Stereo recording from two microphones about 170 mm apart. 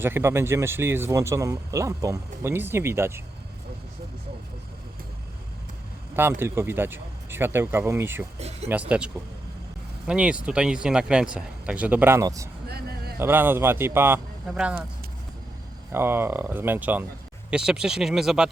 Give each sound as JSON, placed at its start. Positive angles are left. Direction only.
{"t": 0.0, "sound": "speech", "side_deg": -15}
{"t": 6.4, "sound": "speech", "side_deg": -15}
{"t": 8.4, "sound": "speech", "side_deg": -40}
{"t": 8.7, "sound": "speech", "side_deg": -5}
{"t": 10.1, "sound": "speech", "side_deg": -5}
{"t": 12.6, "sound": "a sound", "side_deg": -65}
{"t": 13.1, "sound": "speech", "side_deg": -15}
{"t": 15.9, "sound": "speech", "side_deg": -15}